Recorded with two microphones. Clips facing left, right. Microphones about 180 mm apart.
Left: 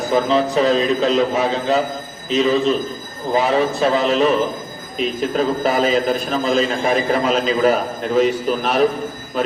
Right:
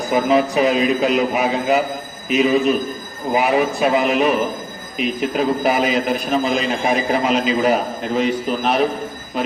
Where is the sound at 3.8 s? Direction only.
15° right (ahead or behind).